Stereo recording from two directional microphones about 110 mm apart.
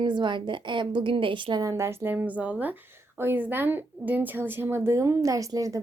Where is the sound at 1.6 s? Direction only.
25° right (ahead or behind).